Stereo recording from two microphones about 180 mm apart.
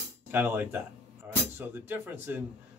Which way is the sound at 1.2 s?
10° right (ahead or behind).